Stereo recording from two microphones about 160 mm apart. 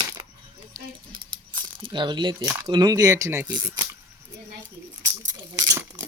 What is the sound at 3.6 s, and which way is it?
Speech, 25° right (ahead or behind).